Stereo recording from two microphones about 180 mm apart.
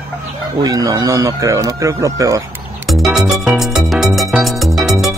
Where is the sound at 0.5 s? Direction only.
20° right (ahead or behind).